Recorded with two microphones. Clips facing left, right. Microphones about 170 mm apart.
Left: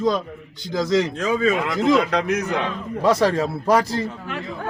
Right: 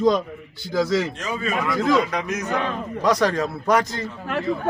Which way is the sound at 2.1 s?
70° left (ahead or behind).